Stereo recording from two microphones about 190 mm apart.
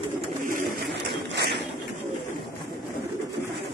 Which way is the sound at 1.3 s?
60° right (ahead or behind).